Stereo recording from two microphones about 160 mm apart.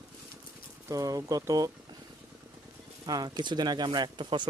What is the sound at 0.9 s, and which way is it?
Speech, 20° right (ahead or behind).